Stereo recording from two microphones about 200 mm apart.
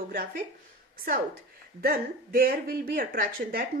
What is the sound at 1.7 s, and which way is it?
Speech, 45° right (ahead or behind).